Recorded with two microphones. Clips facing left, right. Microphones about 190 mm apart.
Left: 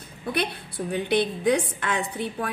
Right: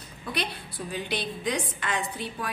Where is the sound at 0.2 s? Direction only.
55° left (ahead or behind).